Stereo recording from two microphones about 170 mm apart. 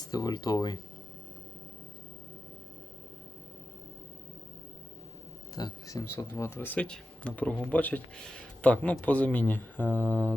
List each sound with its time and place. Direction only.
0.0 s speech: 20° left (ahead or behind)
5.5 s speech: 20° left (ahead or behind)